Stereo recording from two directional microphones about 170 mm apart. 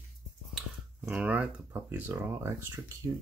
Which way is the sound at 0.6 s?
5° right (ahead or behind).